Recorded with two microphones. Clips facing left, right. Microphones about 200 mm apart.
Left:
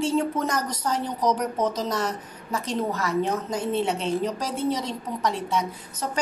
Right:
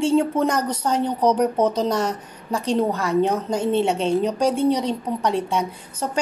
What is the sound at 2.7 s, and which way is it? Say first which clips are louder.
A woman's voice: right 6 dB; 30° right (ahead or behind).